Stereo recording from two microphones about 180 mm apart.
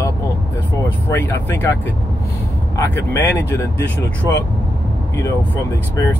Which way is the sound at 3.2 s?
15° left (ahead or behind).